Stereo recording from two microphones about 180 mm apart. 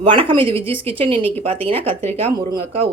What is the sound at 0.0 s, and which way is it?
Speech, 30° right (ahead or behind).